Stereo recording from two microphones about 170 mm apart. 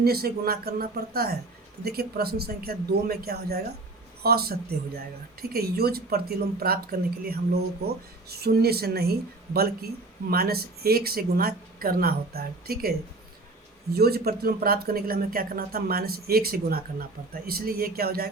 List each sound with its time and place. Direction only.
0.0 s speech: 65° right (ahead or behind)
13.9 s speech: 65° right (ahead or behind)